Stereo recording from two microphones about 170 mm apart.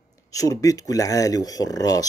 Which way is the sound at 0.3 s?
20° left (ahead or behind).